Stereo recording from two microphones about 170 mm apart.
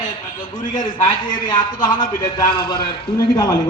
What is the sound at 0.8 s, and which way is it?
A man's voice, 25° left (ahead or behind).